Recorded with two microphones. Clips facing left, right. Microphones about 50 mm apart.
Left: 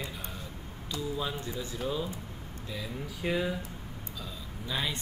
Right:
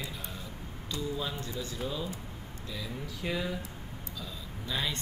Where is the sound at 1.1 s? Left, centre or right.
Centre.